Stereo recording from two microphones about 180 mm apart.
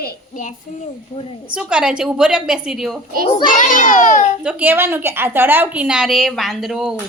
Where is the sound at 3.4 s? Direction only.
45° left (ahead or behind).